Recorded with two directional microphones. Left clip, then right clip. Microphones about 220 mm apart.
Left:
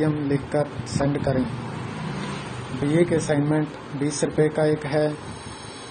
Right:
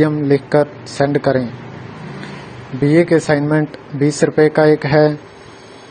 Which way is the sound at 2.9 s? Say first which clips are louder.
Right 8 dB; 35° right (ahead or behind).